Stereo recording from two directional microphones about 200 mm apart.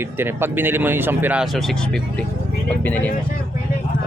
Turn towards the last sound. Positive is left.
turn(degrees=10)  # may be behind; listen again after turning